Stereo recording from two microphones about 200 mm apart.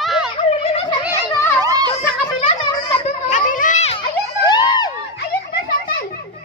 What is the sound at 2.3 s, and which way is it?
Music, 25° left (ahead or behind).